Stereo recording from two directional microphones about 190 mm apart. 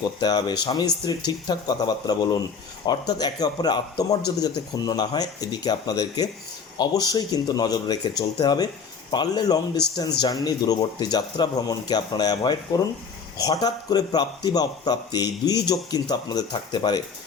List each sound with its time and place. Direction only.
0.0 s a man's voice: 20° left (ahead or behind)